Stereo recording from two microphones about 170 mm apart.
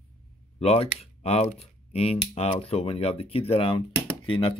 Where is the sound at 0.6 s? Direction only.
40° left (ahead or behind).